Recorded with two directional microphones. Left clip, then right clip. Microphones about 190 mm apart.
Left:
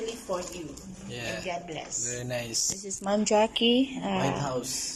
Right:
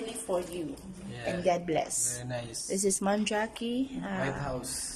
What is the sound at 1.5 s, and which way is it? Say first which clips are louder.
Speech: right 7 dB; 40° right (ahead or behind).